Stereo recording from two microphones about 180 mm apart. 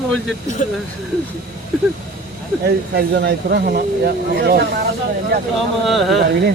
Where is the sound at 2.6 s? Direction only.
65° right (ahead or behind).